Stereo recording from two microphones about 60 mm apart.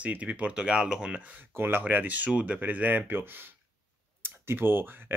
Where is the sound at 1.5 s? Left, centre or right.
Right.